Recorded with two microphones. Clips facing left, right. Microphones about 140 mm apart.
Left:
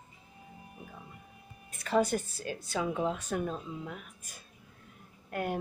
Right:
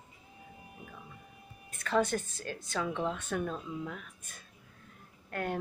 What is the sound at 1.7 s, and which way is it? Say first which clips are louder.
Speech: left 2 dB; 5° left (ahead or behind).